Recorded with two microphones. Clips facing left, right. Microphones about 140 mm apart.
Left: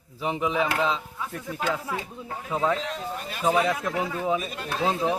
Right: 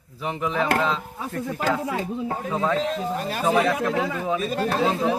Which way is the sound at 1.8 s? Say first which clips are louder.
Right 7 dB; 90° right.